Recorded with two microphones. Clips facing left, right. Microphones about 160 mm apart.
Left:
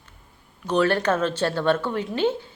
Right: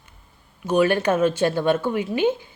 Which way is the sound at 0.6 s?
10° right (ahead or behind).